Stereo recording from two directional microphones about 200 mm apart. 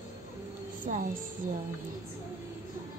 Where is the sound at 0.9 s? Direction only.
30° right (ahead or behind).